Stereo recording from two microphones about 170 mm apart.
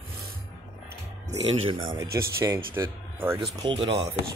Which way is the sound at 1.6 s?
30° right (ahead or behind).